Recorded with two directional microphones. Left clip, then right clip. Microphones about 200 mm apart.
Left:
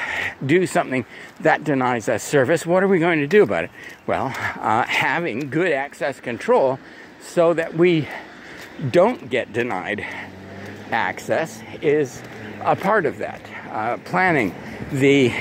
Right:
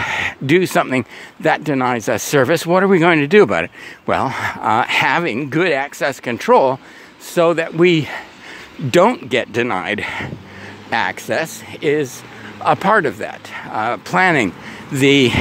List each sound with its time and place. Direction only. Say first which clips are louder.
0.0 s speech: right 5 dB; 35° right (ahead or behind)